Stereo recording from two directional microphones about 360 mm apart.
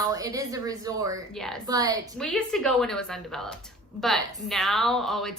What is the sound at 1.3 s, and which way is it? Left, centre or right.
Speech, centre.